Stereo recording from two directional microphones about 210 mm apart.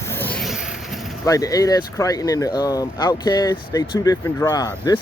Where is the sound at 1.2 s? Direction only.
15° left (ahead or behind).